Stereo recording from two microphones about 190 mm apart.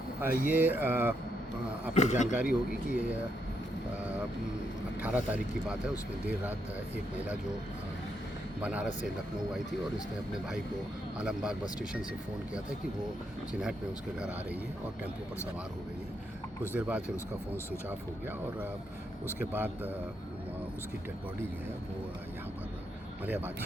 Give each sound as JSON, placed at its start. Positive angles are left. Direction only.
{"t": 0.2, "sound": "speech", "side_deg": -10}
{"t": 2.0, "sound": "a man's voice", "side_deg": 40}
{"t": 2.4, "sound": "speech", "side_deg": -10}
{"t": 5.0, "sound": "speech", "side_deg": -10}
{"t": 8.6, "sound": "speech", "side_deg": -5}
{"t": 11.2, "sound": "speech", "side_deg": -5}
{"t": 13.5, "sound": "speech", "side_deg": -5}
{"t": 16.7, "sound": "speech", "side_deg": -10}
{"t": 19.4, "sound": "speech", "side_deg": -10}
{"t": 23.2, "sound": "speech", "side_deg": -10}